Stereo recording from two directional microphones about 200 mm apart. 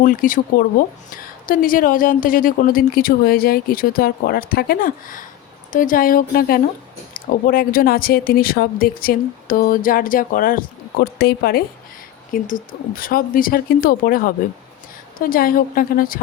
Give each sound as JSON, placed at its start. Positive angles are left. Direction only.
{"t": 0.0, "sound": "a woman's voice", "side_deg": 40}